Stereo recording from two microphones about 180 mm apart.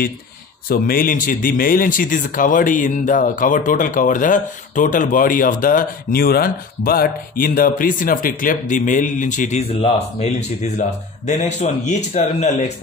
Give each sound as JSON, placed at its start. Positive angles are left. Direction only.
{"t": 0.7, "sound": "a man's voice", "side_deg": 55}